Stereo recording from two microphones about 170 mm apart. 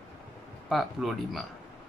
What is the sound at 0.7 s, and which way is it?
Speech, centre (ahead or behind).